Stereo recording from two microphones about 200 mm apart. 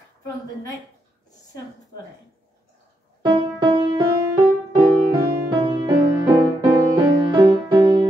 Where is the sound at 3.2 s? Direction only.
25° right (ahead or behind).